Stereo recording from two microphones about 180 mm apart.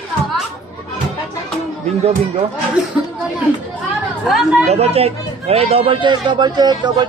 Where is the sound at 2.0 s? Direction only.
35° right (ahead or behind).